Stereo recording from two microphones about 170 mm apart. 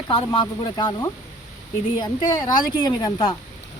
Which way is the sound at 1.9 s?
25° left (ahead or behind).